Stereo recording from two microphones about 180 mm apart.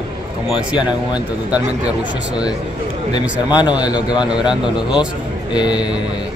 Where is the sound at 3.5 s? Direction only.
25° left (ahead or behind).